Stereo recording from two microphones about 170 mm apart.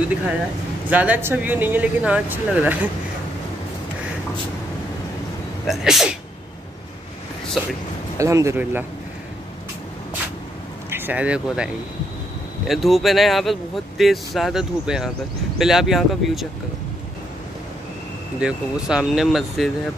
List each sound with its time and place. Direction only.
0.8 s speech: 10° right (ahead or behind)
5.7 s speech: centre (ahead or behind)
8.2 s speech: 15° right (ahead or behind)
10.9 s speech: 10° right (ahead or behind)
18.4 s speech: 5° right (ahead or behind)